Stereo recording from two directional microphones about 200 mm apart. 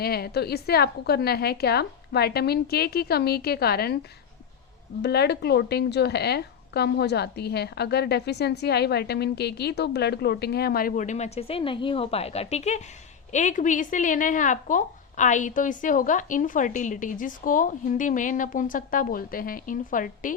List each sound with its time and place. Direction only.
0.0 s a woman's voice: 50° left (ahead or behind)
5.0 s a woman's voice: 55° left (ahead or behind)